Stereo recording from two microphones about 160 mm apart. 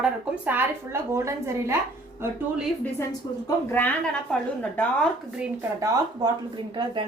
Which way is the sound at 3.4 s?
10° left (ahead or behind).